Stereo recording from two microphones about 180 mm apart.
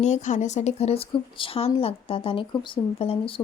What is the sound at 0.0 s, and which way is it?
Speech, 40° left (ahead or behind).